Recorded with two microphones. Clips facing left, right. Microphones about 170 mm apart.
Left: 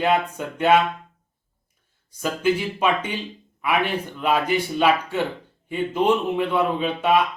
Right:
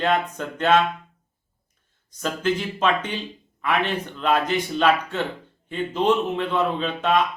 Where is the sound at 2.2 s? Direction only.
10° left (ahead or behind).